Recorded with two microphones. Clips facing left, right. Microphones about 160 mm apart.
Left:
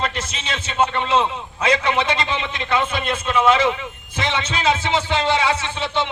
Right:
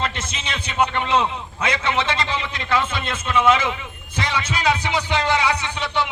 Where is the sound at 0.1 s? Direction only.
25° right (ahead or behind).